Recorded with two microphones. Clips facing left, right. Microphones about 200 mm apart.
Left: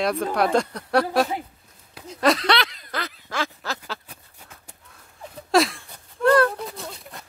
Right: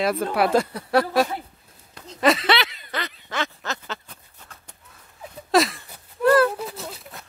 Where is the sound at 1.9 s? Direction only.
5° left (ahead or behind).